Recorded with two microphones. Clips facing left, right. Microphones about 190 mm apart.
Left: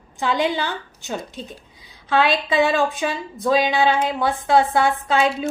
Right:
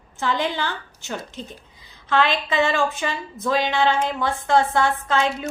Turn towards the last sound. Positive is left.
turn(degrees=10)  # may be behind; listen again after turning